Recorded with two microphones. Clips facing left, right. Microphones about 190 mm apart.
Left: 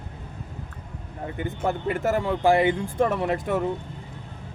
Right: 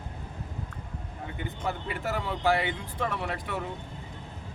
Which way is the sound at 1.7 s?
50° left (ahead or behind).